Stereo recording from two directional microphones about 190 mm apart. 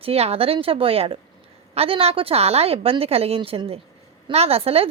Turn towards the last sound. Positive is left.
turn(degrees=-30)  # may be behind; listen again after turning